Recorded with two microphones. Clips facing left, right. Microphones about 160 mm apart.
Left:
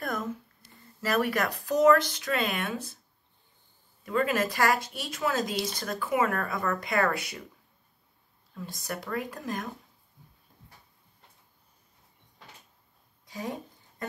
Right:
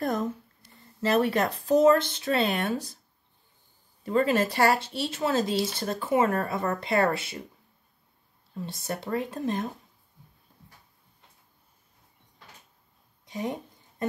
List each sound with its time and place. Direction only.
0.0 s speech: 30° right (ahead or behind)
4.0 s speech: 30° right (ahead or behind)
8.5 s speech: 25° right (ahead or behind)
13.2 s a sound: 20° right (ahead or behind)